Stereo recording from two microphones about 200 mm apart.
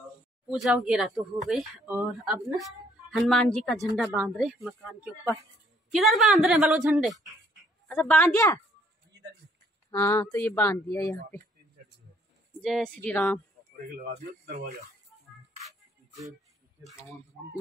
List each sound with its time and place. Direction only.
0.8 s speech: 5° right (ahead or behind)
7.9 s speech: 10° left (ahead or behind)
9.8 s speech: 15° left (ahead or behind)
12.6 s speech: 5° left (ahead or behind)
14.1 s speech: 45° right (ahead or behind)